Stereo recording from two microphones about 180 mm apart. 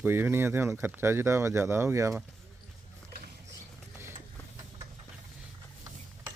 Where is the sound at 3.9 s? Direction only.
15° right (ahead or behind).